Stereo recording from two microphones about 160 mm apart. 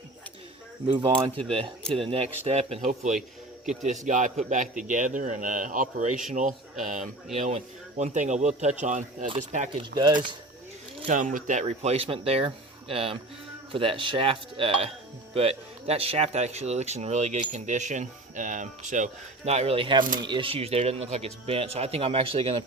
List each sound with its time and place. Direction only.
0.9 s speech: 35° right (ahead or behind); by 9.3 s 50° right (ahead or behind)
9.3 s speech: 40° right (ahead or behind)
11.1 s speech: 55° right (ahead or behind); by 22.5 s 35° right (ahead or behind)